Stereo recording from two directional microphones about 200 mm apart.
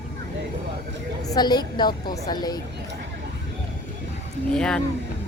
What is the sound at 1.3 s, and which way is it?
A woman's voice, 20° left (ahead or behind).